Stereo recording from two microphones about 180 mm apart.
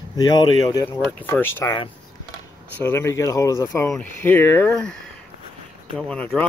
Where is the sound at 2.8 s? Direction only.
15° left (ahead or behind).